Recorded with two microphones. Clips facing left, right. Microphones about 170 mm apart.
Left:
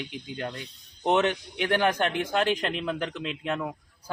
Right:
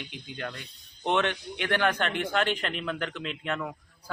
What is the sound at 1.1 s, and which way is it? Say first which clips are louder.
Speech: left 3 dB; 10° left (ahead or behind).